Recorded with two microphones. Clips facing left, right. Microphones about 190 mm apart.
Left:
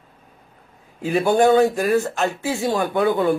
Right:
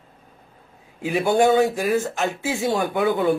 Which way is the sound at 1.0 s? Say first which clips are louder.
Left 2 dB; 15° right (ahead or behind).